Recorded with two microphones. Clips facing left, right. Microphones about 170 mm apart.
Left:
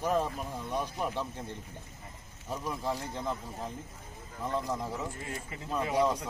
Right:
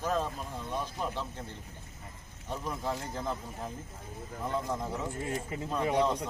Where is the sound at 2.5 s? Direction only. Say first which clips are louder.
Left 1 dB; centre (ahead or behind).